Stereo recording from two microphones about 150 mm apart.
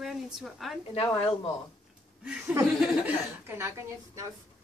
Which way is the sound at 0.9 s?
35° left (ahead or behind).